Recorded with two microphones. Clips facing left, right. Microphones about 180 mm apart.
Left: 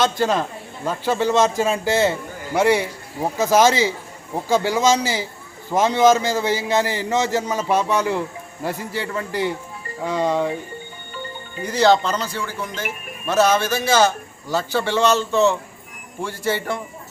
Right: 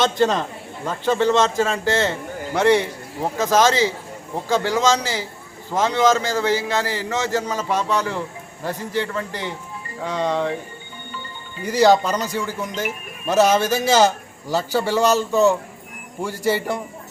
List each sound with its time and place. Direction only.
0.0 s a man's voice: 5° left (ahead or behind)
11.6 s speech: 10° right (ahead or behind)